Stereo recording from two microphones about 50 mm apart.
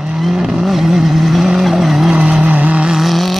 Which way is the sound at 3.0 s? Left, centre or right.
Centre.